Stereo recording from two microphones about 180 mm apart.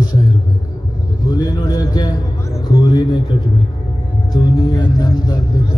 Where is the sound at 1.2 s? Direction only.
20° left (ahead or behind).